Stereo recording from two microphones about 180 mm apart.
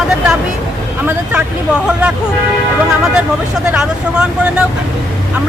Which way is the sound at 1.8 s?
5° right (ahead or behind).